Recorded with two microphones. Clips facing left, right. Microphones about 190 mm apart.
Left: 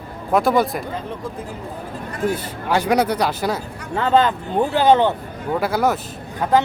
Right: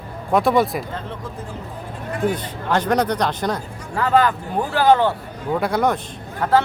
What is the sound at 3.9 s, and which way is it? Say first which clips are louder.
A man's voice: left 1 dB; 25° left (ahead or behind).